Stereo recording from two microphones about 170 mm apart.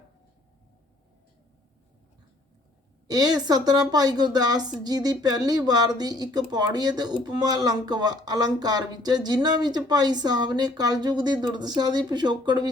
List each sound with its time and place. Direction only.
3.1 s speech: 25° right (ahead or behind)